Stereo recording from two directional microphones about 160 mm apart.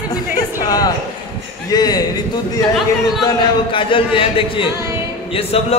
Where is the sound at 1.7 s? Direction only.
25° left (ahead or behind).